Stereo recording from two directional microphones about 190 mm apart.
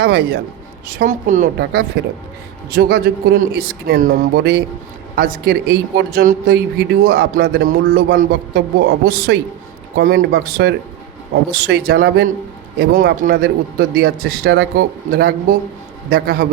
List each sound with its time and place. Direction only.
0.0 s speech: 55° right (ahead or behind)
0.9 s speech: 45° right (ahead or behind)
1.5 s speech: 55° right (ahead or behind)